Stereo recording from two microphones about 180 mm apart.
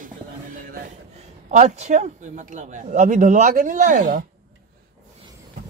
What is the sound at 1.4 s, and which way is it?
Speech, 40° right (ahead or behind).